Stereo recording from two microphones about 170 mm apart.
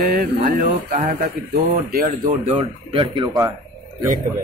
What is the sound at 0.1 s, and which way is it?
Speech, 50° right (ahead or behind).